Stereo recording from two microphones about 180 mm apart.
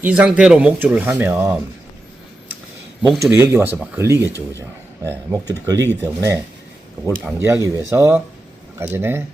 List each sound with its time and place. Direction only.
0.0 s speech: 5° right (ahead or behind)
3.2 s speech: 10° right (ahead or behind)
4.3 s speech: 15° left (ahead or behind)
5.0 s speech: 20° right (ahead or behind)